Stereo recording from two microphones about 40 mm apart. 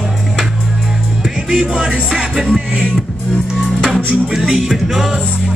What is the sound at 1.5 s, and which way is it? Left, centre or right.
Music, right.